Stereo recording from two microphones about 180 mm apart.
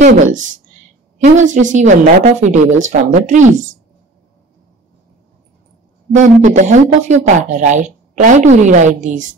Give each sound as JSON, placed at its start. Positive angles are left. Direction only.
{"t": 0.0, "sound": "speech", "side_deg": -45}
{"t": 6.1, "sound": "speech", "side_deg": -45}